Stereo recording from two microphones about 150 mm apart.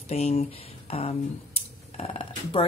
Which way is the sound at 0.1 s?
45° left (ahead or behind).